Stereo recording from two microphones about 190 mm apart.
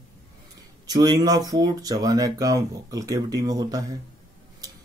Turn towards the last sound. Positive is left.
turn(degrees=-20)  # may be behind; listen again after turning